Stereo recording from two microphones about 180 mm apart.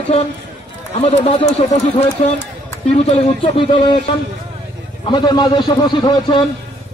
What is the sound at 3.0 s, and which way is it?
Speech, 30° left (ahead or behind).